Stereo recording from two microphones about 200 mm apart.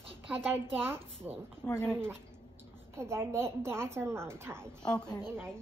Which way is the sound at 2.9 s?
15° right (ahead or behind).